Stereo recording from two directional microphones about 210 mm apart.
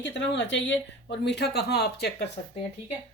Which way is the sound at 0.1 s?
60° left (ahead or behind).